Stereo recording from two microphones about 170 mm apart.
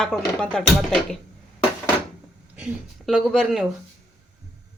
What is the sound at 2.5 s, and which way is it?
Speech, 5° right (ahead or behind).